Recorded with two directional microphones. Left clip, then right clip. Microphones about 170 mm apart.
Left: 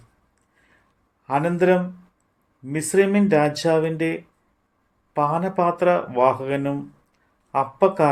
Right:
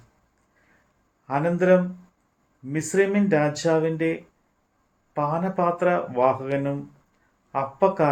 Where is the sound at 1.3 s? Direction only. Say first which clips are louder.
Left 1 dB; 50° left (ahead or behind).